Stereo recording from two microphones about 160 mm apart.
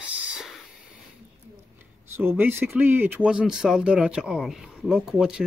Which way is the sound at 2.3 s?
15° right (ahead or behind).